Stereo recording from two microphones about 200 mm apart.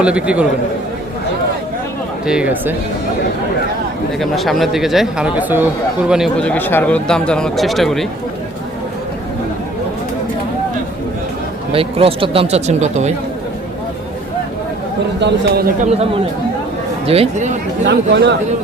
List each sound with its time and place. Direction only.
0.0 s speech: 5° right (ahead or behind)
2.2 s speech: 5° right (ahead or behind)
4.2 s speech: centre (ahead or behind)
11.7 s speech: 30° right (ahead or behind)
15.2 s a man's voice: 50° right (ahead or behind)
17.1 s speech: 35° right (ahead or behind)
17.8 s speech: 60° right (ahead or behind)